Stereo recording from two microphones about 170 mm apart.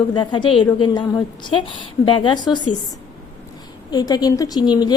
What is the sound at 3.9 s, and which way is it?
Speech, 25° left (ahead or behind).